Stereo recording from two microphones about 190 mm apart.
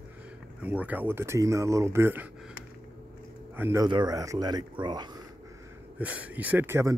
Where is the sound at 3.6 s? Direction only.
15° right (ahead or behind).